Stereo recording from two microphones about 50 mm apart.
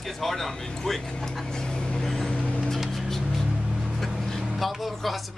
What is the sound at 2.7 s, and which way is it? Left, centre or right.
Music, centre.